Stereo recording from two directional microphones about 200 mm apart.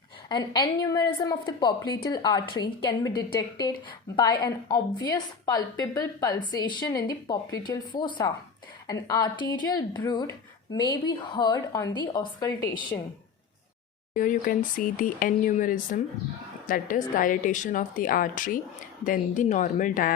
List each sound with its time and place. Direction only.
0.3 s a woman's voice: 20° left (ahead or behind)
14.1 s a woman's voice: 40° left (ahead or behind)